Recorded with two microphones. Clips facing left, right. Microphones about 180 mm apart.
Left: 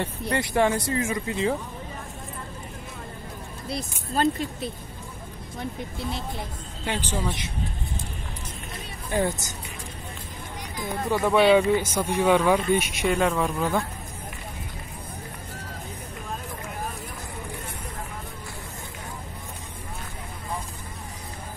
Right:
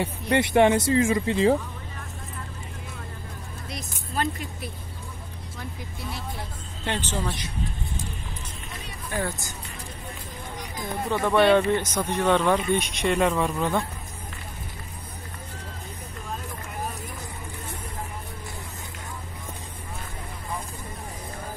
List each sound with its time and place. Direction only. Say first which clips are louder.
0.0 s speech: right 3 dB; 20° right (ahead or behind)
3.6 s speech: left 7 dB; 30° left (ahead or behind)
6.8 s speech: even; 10° left (ahead or behind)
9.1 s speech: left 5 dB; 20° left (ahead or behind)
11.1 s speech: left 1 dB; 5° left (ahead or behind)